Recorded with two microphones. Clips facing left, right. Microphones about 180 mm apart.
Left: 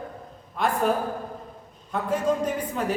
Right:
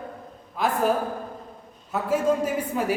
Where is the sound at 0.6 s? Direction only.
Centre (ahead or behind).